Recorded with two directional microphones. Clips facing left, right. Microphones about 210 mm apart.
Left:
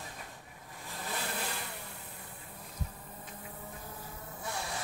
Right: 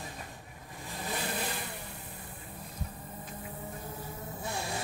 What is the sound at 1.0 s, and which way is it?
Vehicle, 15° right (ahead or behind).